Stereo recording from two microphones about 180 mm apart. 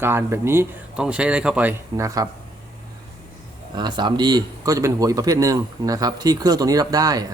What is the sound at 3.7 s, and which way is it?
A man's voice, 25° right (ahead or behind).